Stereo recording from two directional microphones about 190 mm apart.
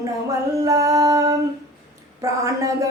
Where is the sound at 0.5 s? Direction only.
15° right (ahead or behind).